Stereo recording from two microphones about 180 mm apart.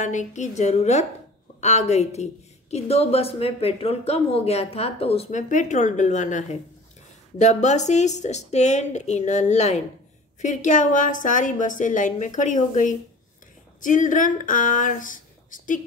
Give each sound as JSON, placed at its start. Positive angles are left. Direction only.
{"t": 0.0, "sound": "a woman's voice", "side_deg": 45}